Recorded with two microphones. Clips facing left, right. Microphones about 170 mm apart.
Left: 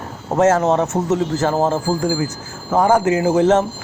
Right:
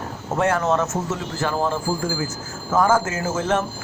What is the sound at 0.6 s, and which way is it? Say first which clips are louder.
Speech: left 4 dB; 35° left (ahead or behind).